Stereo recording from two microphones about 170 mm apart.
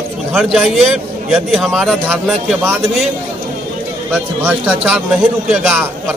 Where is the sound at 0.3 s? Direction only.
5° right (ahead or behind).